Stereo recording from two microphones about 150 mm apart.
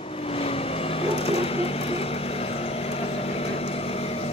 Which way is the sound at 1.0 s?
40° left (ahead or behind).